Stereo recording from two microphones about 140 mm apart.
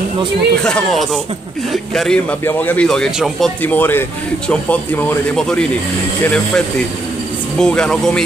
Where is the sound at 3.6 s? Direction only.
15° left (ahead or behind).